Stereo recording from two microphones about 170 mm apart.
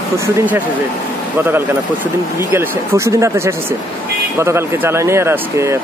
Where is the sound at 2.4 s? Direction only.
15° right (ahead or behind).